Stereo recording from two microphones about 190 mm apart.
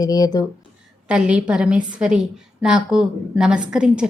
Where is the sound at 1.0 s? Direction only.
5° right (ahead or behind).